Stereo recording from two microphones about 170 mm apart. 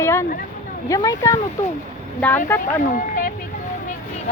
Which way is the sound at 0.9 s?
20° left (ahead or behind).